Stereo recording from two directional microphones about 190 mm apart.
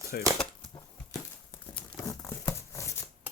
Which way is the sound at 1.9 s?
15° left (ahead or behind).